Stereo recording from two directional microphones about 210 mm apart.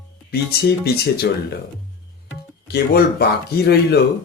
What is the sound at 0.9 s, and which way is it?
Speech, 50° left (ahead or behind).